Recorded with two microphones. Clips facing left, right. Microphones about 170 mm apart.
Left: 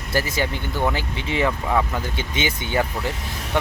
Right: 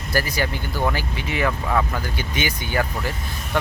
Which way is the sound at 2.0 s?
25° left (ahead or behind).